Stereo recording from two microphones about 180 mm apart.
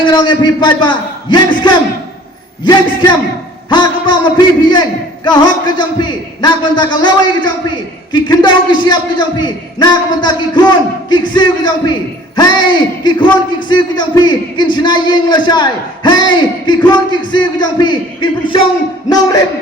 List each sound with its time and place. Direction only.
0.0 s a man's voice: 25° left (ahead or behind)